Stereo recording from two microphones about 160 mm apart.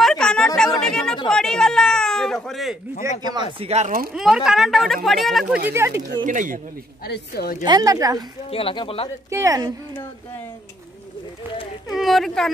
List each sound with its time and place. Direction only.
0.0 s a sound: 5° left (ahead or behind)
0.7 s chatter: 5° left (ahead or behind)
1.2 s speech: 5° left (ahead or behind)
3.5 s speech: 40° right (ahead or behind)
4.1 s speech: 5° right (ahead or behind)
5.7 s speech: 15° right (ahead or behind)
6.2 s speech: 55° right (ahead or behind)
7.1 s a woman's voice: 80° left
7.6 s speech: 25° right (ahead or behind)
8.5 s speech: 35° left (ahead or behind)
9.3 s speech: 20° right (ahead or behind)
11.9 s speech: centre (ahead or behind)